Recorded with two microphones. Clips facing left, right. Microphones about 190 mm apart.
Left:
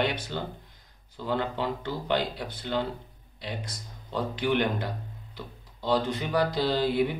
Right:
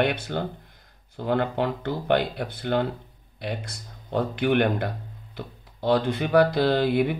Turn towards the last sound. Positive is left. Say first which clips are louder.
# right 4 dB
turn(degrees=-60)  # may be behind; listen again after turning